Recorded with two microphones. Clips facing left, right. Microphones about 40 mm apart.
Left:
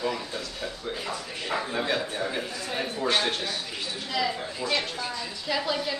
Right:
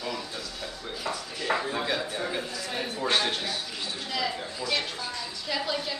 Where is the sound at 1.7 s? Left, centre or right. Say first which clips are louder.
Left 1 dB; centre.